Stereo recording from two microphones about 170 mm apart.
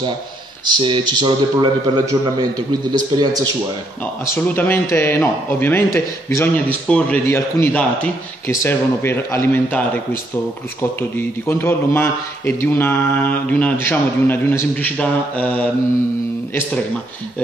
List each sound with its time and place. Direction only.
0.7 s a man's voice: 25° right (ahead or behind)
4.0 s a man's voice: 10° left (ahead or behind)